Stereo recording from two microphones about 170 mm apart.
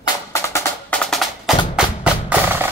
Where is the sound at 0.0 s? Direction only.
15° left (ahead or behind); by 1.6 s centre (ahead or behind).